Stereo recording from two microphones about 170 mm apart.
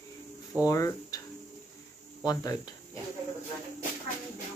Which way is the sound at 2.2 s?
20° left (ahead or behind).